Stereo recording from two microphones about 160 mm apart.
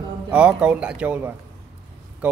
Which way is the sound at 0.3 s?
5° right (ahead or behind).